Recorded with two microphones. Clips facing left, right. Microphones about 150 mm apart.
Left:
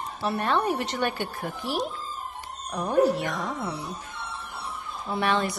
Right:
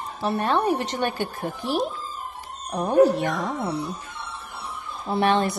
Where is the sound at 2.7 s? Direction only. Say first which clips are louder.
Right 4 dB; 20° right (ahead or behind).